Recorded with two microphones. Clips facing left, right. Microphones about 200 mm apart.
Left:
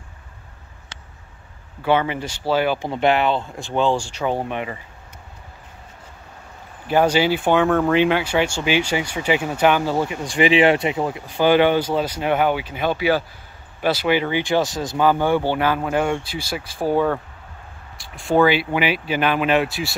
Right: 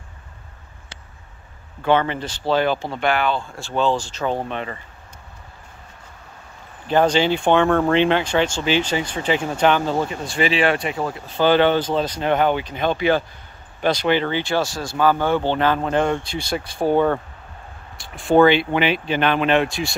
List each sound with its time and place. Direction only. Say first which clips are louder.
1.8 s speech: right 1 dB; 10° left (ahead or behind)
6.9 s speech: even; 10° left (ahead or behind)
16.9 s speech: right 1 dB; 25° right (ahead or behind)
17.9 s a sound: right 2 dB; centre (ahead or behind)
18.4 s speech: right 2 dB; 5° left (ahead or behind)